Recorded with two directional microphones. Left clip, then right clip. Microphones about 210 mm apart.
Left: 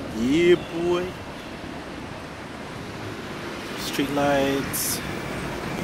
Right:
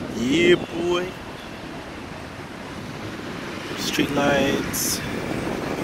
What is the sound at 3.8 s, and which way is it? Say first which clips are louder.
Speech: right 2 dB; 5° left (ahead or behind).